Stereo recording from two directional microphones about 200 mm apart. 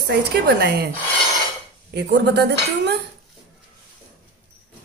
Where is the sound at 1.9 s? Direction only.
55° right (ahead or behind).